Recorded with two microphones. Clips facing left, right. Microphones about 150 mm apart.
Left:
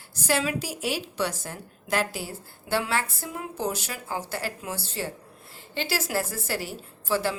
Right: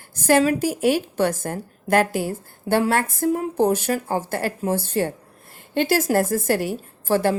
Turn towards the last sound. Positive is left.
turn(degrees=-50)  # may be behind; listen again after turning